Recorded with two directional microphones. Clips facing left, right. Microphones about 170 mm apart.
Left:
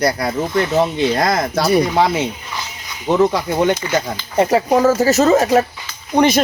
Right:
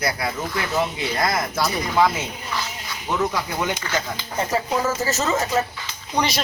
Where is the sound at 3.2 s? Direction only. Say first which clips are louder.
Left 9 dB; 30° left (ahead or behind).